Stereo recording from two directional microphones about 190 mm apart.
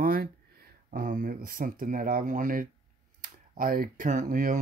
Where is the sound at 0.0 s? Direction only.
50° right (ahead or behind).